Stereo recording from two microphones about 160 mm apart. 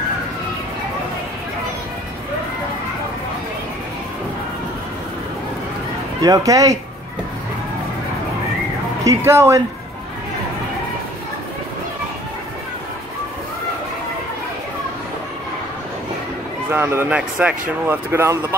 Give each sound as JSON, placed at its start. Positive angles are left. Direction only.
{"t": 6.2, "sound": "speech", "side_deg": -20}
{"t": 9.0, "sound": "speech", "side_deg": -15}
{"t": 16.7, "sound": "speech", "side_deg": -15}